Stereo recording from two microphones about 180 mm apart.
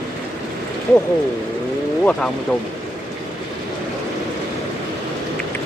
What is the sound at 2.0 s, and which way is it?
Speech, 5° left (ahead or behind).